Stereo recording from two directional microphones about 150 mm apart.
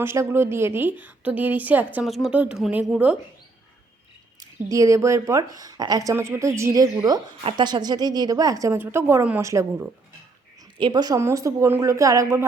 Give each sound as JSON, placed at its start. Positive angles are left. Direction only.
{"t": 0.0, "sound": "a woman's voice", "side_deg": -15}
{"t": 2.0, "sound": "speech", "side_deg": 0}
{"t": 4.7, "sound": "speech", "side_deg": -20}
{"t": 10.8, "sound": "speech", "side_deg": -30}